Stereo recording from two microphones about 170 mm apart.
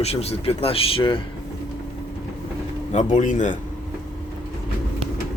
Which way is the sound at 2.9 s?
45° left (ahead or behind).